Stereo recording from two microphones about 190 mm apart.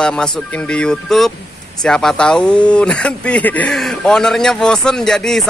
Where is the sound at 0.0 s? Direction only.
5° left (ahead or behind).